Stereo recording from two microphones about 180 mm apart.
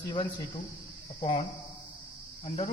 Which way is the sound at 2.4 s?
35° left (ahead or behind).